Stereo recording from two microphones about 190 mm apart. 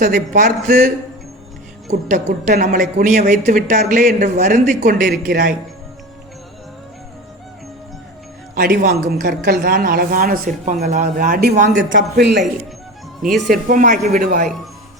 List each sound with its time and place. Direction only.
0.1 s a man's voice: 40° right (ahead or behind)
1.9 s a man's voice: 40° right (ahead or behind)
4.9 s speech: 55° right (ahead or behind)
8.5 s speech: 50° right (ahead or behind)
11.7 s speech: 75° right (ahead or behind)
12.1 s speech: 65° right (ahead or behind)
13.5 s speech: 45° right (ahead or behind)